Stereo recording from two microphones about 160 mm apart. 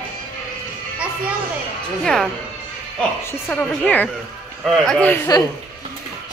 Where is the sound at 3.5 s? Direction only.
10° left (ahead or behind).